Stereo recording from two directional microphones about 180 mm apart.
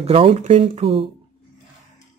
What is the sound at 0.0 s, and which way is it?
Speech, 30° right (ahead or behind).